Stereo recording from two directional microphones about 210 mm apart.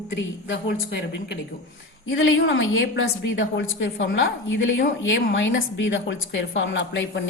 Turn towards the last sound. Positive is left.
turn(degrees=60)  # may be behind; listen again after turning